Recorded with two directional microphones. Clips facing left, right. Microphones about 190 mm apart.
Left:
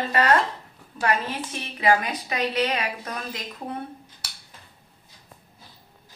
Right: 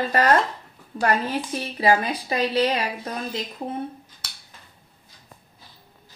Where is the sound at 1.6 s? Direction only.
30° right (ahead or behind).